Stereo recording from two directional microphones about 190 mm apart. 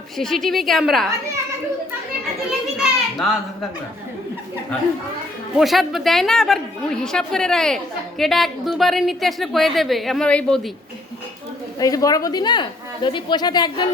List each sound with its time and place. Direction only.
0.2 s a woman's voice: centre (ahead or behind)
2.7 s a sound: centre (ahead or behind)
5.5 s a woman's voice: centre (ahead or behind)
11.8 s speech: 20° left (ahead or behind)